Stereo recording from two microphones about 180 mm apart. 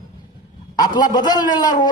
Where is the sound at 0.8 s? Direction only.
20° left (ahead or behind).